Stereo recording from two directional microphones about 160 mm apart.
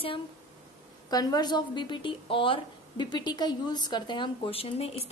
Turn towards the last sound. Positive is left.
turn(degrees=40)  # may be behind; listen again after turning